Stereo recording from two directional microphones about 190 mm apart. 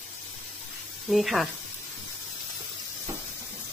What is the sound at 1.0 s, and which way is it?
Speech, centre (ahead or behind).